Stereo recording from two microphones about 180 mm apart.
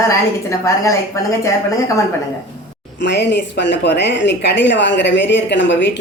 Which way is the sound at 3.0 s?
70° left (ahead or behind).